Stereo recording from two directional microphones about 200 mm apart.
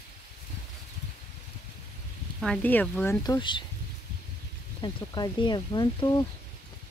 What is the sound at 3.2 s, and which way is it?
Speech, 20° left (ahead or behind).